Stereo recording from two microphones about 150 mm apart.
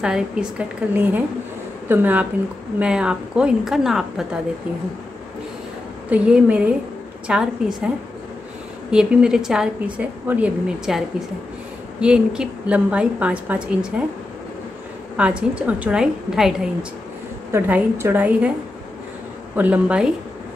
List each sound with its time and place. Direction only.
0.0 s a woman's voice: 5° right (ahead or behind)
6.0 s a woman's voice: 10° right (ahead or behind)
8.9 s a woman's voice: 5° right (ahead or behind)
15.1 s a woman's voice: 10° right (ahead or behind)
17.5 s a woman's voice: 15° right (ahead or behind)
19.5 s a woman's voice: 10° right (ahead or behind)